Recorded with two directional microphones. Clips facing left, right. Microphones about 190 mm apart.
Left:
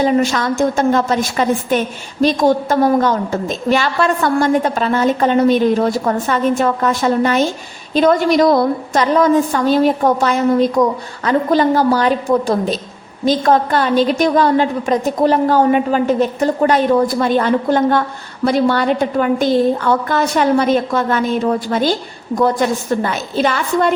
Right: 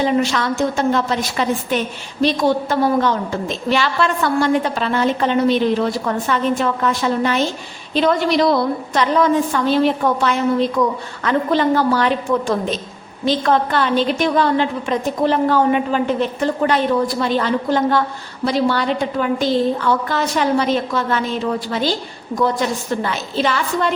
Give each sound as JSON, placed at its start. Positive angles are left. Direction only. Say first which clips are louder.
{"t": 0.0, "sound": "a woman's voice", "louder": "left 3 dB", "side_deg": 45}